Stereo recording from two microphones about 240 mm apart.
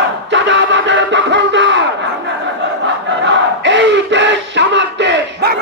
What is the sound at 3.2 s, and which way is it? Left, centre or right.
Battle cry, right.